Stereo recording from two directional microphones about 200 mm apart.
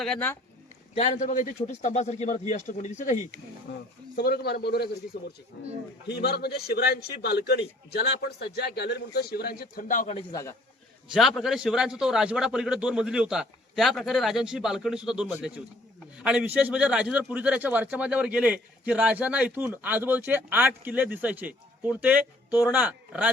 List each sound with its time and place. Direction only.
0.0 s a man's voice: 5° left (ahead or behind)
0.9 s speech: 35° left (ahead or behind)
3.7 s a man's voice: 50° left (ahead or behind)
6.1 s a man's voice: 55° left (ahead or behind)
10.2 s a man's voice: 20° left (ahead or behind)
11.1 s a man's voice: centre (ahead or behind)